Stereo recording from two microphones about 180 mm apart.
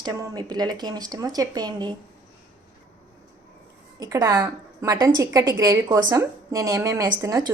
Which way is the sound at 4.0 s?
20° right (ahead or behind).